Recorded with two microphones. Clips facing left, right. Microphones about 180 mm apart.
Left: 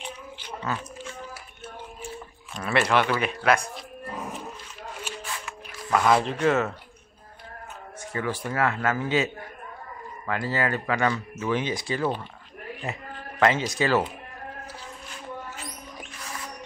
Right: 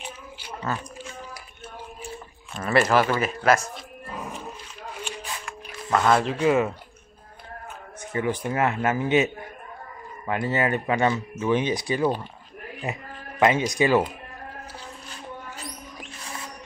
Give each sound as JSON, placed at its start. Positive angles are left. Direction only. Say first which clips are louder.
{"t": 0.0, "sound": "a sound", "louder": "left 1 dB", "side_deg": -10}
{"t": 2.6, "sound": "a man's voice", "louder": "right 2 dB", "side_deg": 0}
{"t": 2.9, "sound": "speech", "louder": "right 1 dB", "side_deg": -35}
{"t": 3.3, "sound": "a man's voice", "louder": "right 2 dB", "side_deg": 0}
{"t": 5.4, "sound": "a sound", "louder": "right 1 dB", "side_deg": 0}
{"t": 6.4, "sound": "speech", "louder": "right 2 dB", "side_deg": -10}
{"t": 8.1, "sound": "speech", "louder": "right 4 dB", "side_deg": -20}